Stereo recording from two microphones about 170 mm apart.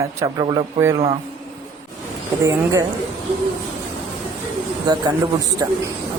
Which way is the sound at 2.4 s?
20° right (ahead or behind).